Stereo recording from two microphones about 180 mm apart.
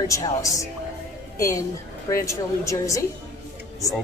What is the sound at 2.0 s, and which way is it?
A woman's voice, 15° left (ahead or behind).